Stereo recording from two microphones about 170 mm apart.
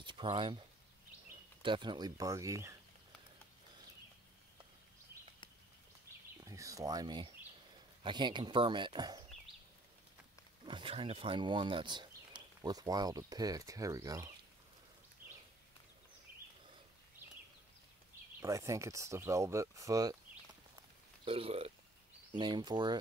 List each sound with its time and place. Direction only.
0.0 s speech: 30° right (ahead or behind)
1.6 s speech: 30° right (ahead or behind)
6.4 s speech: 20° right (ahead or behind)
10.6 s speech: 30° right (ahead or behind)
15.2 s a sound: 55° right (ahead or behind)
18.4 s speech: 20° right (ahead or behind)
21.2 s speech: 35° right (ahead or behind)